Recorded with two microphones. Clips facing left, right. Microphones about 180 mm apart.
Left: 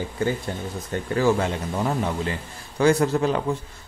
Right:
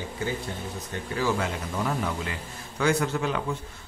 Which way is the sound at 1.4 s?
30° left (ahead or behind).